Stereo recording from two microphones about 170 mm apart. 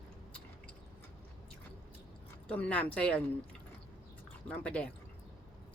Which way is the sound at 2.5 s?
10° left (ahead or behind).